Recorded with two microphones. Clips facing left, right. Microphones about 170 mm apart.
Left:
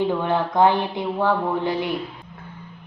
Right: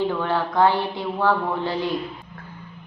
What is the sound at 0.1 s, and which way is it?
Speech, 15° left (ahead or behind).